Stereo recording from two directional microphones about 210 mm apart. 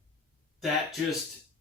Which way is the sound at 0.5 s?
Centre (ahead or behind).